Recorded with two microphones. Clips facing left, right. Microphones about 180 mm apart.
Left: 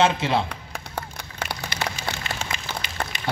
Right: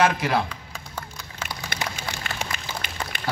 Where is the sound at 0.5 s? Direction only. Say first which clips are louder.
Left 3 dB; 65° left (ahead or behind).